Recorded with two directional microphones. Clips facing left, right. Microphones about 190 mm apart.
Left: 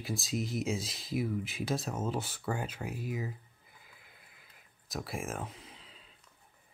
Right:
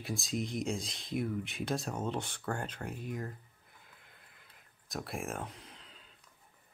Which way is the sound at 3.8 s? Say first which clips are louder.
Even; 5° left (ahead or behind).